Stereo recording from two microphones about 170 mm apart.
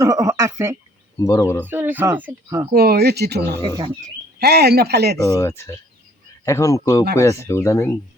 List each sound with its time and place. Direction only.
0.0 s a sound: 20° right (ahead or behind)
1.2 s speech: 20° left (ahead or behind)
1.6 s speech: 10° right (ahead or behind)
2.7 s speech: 65° right (ahead or behind)
3.8 s speech: 25° right (ahead or behind)
4.4 s speech: 70° right (ahead or behind)
5.1 s speech: 20° left (ahead or behind)